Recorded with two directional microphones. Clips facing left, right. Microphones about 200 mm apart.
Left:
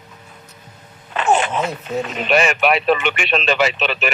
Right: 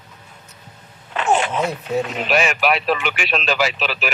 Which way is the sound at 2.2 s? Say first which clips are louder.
Left 5 dB; centre (ahead or behind).